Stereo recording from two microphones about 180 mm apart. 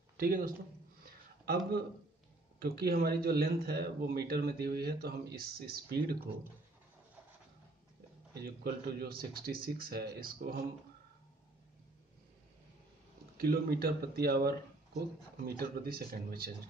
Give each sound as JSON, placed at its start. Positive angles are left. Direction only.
{"t": 0.2, "sound": "speech", "side_deg": -50}
{"t": 2.6, "sound": "speech", "side_deg": -60}
{"t": 8.4, "sound": "speech", "side_deg": -60}
{"t": 13.4, "sound": "speech", "side_deg": -60}